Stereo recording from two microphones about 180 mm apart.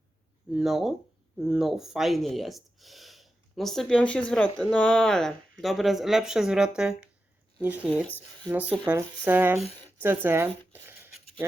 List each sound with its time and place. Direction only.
0.5 s speech: centre (ahead or behind)
7.9 s speech: 5° left (ahead or behind)
8.1 s speech: 10° right (ahead or behind)
10.7 s a sound: 10° right (ahead or behind)